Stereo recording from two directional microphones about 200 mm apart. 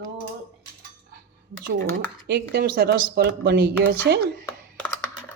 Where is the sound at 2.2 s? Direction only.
55° right (ahead or behind).